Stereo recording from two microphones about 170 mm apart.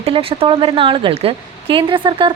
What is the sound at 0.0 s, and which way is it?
Speech, 35° right (ahead or behind).